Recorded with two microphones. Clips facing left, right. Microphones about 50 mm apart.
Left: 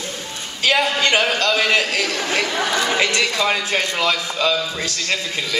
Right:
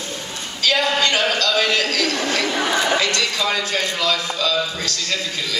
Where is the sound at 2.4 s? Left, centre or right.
Centre.